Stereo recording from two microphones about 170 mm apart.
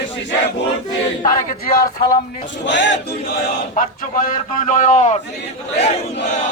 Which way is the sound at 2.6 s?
90° left.